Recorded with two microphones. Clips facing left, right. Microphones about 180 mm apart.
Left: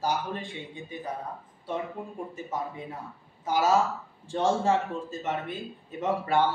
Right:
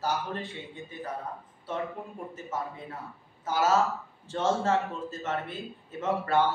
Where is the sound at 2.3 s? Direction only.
15° left (ahead or behind).